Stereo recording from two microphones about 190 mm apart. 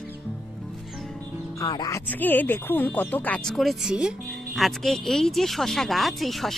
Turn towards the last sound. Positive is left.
turn(degrees=0)  # may be behind; listen again after turning